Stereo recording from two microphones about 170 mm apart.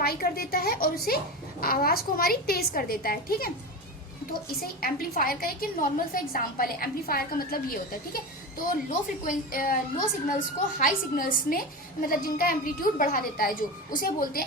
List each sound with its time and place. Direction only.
0.0 s a woman's voice: 65° left (ahead or behind)
4.6 s a woman's voice: 60° left (ahead or behind)